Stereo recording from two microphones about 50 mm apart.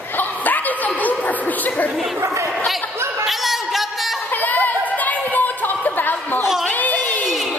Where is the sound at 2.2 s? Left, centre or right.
Right.